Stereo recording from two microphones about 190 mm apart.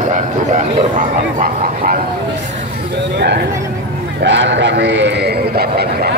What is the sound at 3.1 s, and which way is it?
A man's voice, 60° right (ahead or behind).